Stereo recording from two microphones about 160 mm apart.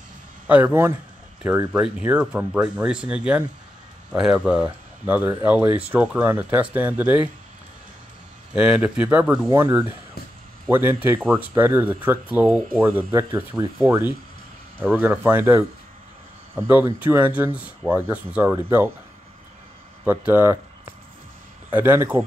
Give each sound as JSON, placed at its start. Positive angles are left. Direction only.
{"t": 0.5, "sound": "speech", "side_deg": -10}
{"t": 8.5, "sound": "speech", "side_deg": -5}
{"t": 9.5, "sound": "speech", "side_deg": -20}
{"t": 11.1, "sound": "speech", "side_deg": 0}
{"t": 11.5, "sound": "speech", "side_deg": -15}
{"t": 20.1, "sound": "speech", "side_deg": -10}
{"t": 21.6, "sound": "speech", "side_deg": -10}